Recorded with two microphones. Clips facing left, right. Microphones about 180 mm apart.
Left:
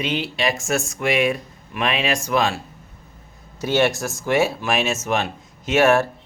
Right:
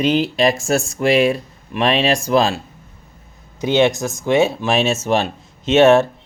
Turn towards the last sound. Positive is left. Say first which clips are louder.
# right 5 dB
turn(degrees=-25)  # may be behind; listen again after turning